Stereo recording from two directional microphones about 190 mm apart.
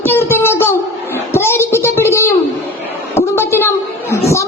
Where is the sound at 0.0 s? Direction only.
10° left (ahead or behind).